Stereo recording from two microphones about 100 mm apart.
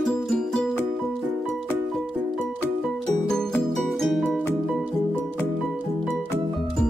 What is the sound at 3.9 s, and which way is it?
Music, 5° left (ahead or behind).